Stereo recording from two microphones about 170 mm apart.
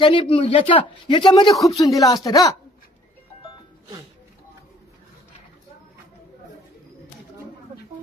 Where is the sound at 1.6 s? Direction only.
20° left (ahead or behind).